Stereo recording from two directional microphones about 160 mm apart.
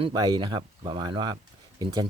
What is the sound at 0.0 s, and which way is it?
Speech, 25° right (ahead or behind).